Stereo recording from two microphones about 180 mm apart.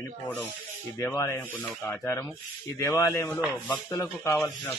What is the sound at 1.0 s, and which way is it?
Rub, 15° left (ahead or behind).